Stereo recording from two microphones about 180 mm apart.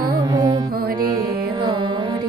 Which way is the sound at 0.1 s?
20° right (ahead or behind).